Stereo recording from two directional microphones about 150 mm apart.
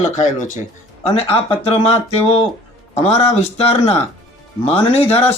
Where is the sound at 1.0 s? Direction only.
40° left (ahead or behind).